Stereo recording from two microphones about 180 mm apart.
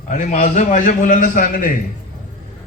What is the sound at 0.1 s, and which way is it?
A man's voice, 45° left (ahead or behind).